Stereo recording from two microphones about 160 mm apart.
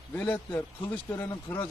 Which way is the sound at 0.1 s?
10° left (ahead or behind).